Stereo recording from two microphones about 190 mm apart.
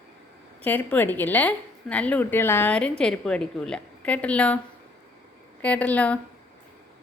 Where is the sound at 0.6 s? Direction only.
10° left (ahead or behind).